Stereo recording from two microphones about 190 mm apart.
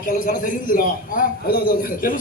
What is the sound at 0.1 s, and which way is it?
A man's voice, 45° left (ahead or behind).